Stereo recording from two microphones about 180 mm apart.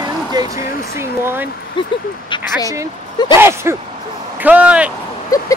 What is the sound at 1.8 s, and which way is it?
Speech, 25° left (ahead or behind).